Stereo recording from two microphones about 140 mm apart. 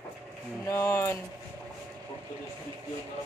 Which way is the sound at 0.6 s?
20° left (ahead or behind).